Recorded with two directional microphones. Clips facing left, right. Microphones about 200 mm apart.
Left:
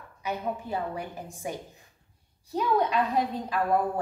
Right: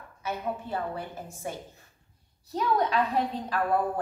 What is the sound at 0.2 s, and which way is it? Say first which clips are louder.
A woman's voice: left 1 dB; 15° left (ahead or behind).